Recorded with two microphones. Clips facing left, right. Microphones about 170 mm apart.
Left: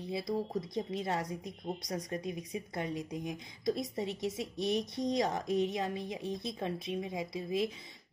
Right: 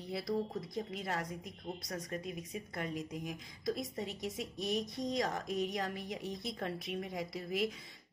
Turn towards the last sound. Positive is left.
turn(degrees=20)  # may be behind; listen again after turning